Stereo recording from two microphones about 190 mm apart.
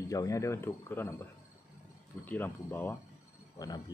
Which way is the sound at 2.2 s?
10° left (ahead or behind).